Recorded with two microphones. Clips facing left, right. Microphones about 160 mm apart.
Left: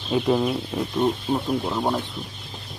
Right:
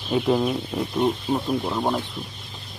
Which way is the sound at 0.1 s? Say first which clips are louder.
Even; centre (ahead or behind).